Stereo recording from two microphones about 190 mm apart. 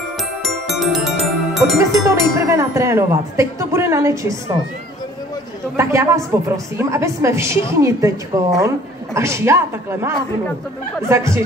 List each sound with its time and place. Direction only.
0.4 s music: centre (ahead or behind)
2.0 s speech: 15° right (ahead or behind)
5.8 s speech: 15° right (ahead or behind)